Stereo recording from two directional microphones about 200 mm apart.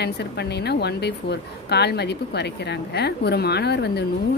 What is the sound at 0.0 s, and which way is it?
Speech, 55° left (ahead or behind).